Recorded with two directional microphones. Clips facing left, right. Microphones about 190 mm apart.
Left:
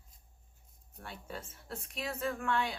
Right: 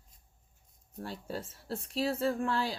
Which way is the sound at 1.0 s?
35° right (ahead or behind).